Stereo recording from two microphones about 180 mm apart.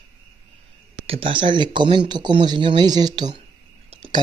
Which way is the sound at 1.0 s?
30° right (ahead or behind).